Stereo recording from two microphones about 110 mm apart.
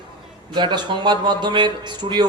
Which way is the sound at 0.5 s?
45° right (ahead or behind).